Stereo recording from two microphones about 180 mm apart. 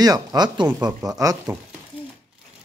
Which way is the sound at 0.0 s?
20° right (ahead or behind).